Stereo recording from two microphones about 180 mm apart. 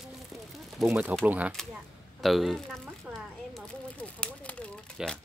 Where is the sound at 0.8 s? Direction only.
10° right (ahead or behind).